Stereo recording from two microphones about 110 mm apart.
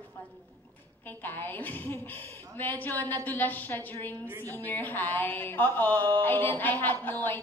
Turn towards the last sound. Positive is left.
turn(degrees=20)  # may be behind; listen again after turning